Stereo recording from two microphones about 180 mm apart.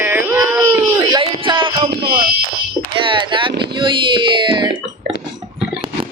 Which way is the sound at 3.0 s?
25° right (ahead or behind).